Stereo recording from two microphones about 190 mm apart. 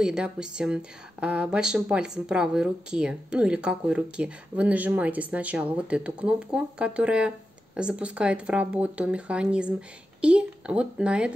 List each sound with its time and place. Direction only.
0.0 s speech: 5° right (ahead or behind)